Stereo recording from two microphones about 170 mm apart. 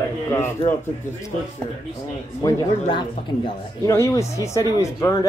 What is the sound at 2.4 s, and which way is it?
Speech, 25° left (ahead or behind).